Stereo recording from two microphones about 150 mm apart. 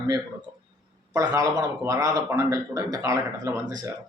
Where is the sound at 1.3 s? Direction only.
20° right (ahead or behind).